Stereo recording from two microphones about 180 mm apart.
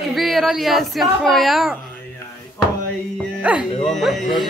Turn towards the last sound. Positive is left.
turn(degrees=0)  # may be behind; listen again after turning